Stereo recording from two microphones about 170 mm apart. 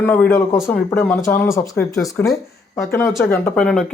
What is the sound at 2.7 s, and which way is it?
Speech, 15° left (ahead or behind).